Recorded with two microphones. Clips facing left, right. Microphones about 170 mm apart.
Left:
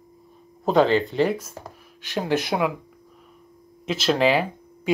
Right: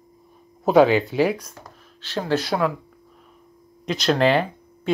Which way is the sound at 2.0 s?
15° left (ahead or behind).